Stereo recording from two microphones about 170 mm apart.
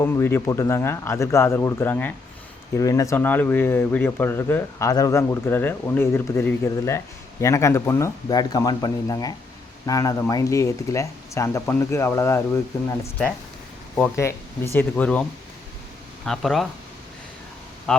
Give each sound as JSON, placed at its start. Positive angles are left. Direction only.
{"t": 0.0, "sound": "speech", "side_deg": 15}
{"t": 13.9, "sound": "speech", "side_deg": 10}
{"t": 17.9, "sound": "a sound", "side_deg": 5}